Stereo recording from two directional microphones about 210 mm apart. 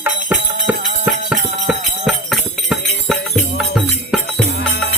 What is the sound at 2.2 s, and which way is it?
Music, centre (ahead or behind).